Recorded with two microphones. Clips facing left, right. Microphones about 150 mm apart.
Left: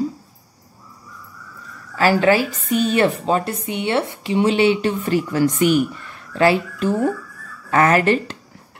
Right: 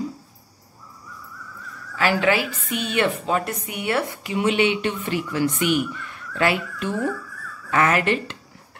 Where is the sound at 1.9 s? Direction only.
40° left (ahead or behind).